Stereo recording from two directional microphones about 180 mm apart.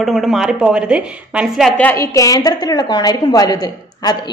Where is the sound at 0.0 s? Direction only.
Centre (ahead or behind).